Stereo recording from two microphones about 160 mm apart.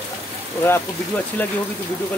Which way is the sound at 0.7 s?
10° left (ahead or behind).